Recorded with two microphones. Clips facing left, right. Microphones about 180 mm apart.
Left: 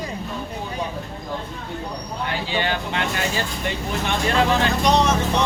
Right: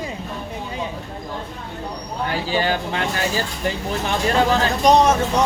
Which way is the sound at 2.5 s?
35° right (ahead or behind).